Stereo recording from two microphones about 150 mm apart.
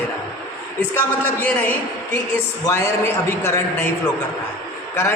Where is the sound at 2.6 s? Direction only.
20° left (ahead or behind).